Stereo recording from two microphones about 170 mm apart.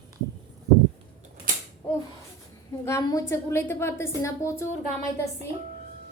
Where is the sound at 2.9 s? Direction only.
15° left (ahead or behind).